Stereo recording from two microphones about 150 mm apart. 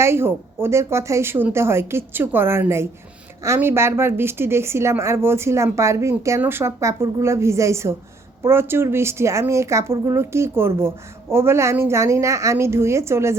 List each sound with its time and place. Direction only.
0.0 s speech: 15° right (ahead or behind)